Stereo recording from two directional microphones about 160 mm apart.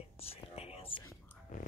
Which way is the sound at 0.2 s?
40° left (ahead or behind).